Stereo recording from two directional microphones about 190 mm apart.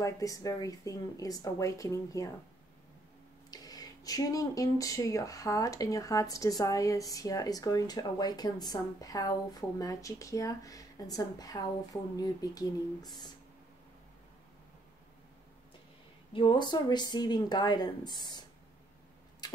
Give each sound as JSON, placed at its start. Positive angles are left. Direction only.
{"t": 0.0, "sound": "speech", "side_deg": 20}
{"t": 3.4, "sound": "speech", "side_deg": 20}
{"t": 16.3, "sound": "speech", "side_deg": 25}
{"t": 19.4, "sound": "a sound", "side_deg": 20}